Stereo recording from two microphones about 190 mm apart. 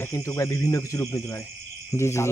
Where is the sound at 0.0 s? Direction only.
15° left (ahead or behind).